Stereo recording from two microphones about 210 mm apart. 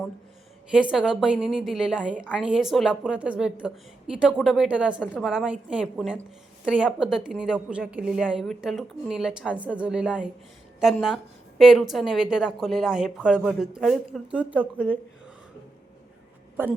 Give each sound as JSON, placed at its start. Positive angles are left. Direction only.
{"t": 0.7, "sound": "a woman's voice", "side_deg": -5}